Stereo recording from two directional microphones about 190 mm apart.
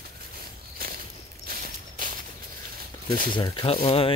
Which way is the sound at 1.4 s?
50° right (ahead or behind).